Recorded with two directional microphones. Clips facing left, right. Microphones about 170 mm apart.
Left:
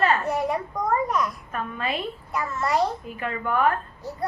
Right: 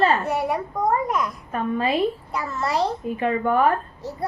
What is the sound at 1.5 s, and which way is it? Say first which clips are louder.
A child's voice: right 6 dB; 30° right (ahead or behind).